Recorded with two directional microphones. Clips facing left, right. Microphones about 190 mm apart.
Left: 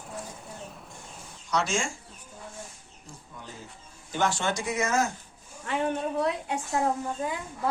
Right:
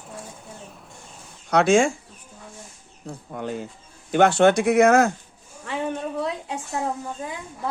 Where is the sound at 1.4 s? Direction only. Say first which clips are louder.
Right 11 dB; 60° right (ahead or behind).